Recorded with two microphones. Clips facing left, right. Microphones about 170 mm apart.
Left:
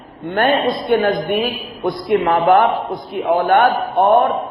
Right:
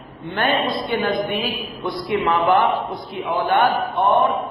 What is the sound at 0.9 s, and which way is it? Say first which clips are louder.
A man's voice: left 7 dB; 60° left (ahead or behind).